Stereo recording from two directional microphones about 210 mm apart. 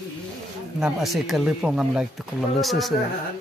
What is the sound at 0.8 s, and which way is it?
Speech, centre (ahead or behind).